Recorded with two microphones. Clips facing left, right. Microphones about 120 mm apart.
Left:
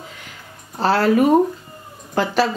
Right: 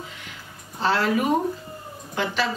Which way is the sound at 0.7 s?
40° left (ahead or behind).